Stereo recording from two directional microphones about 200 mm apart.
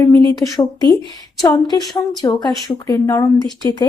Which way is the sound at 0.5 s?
20° left (ahead or behind).